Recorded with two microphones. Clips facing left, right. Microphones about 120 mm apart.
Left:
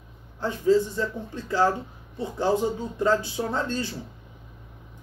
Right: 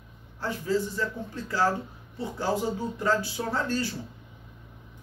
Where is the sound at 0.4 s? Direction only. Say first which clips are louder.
Left 7 dB; 20° left (ahead or behind).